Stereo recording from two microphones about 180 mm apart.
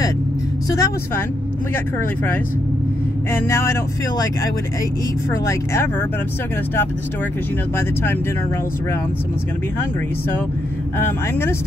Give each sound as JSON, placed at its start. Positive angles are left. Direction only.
{"t": 0.7, "sound": "speech", "side_deg": 20}
{"t": 3.3, "sound": "speech", "side_deg": 15}
{"t": 5.3, "sound": "speech", "side_deg": 15}
{"t": 7.7, "sound": "speech", "side_deg": 10}
{"t": 11.0, "sound": "speech", "side_deg": 15}